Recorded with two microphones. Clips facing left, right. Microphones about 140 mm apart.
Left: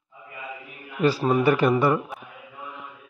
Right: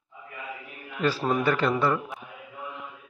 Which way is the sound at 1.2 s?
10° left (ahead or behind).